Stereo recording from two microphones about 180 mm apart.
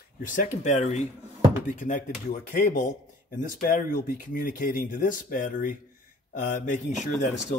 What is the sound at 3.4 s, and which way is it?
Speech, 45° left (ahead or behind).